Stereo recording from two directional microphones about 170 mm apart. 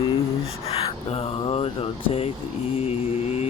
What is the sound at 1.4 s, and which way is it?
Speech, 35° left (ahead or behind).